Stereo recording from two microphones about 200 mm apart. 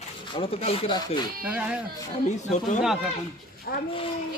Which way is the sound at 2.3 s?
35° left (ahead or behind).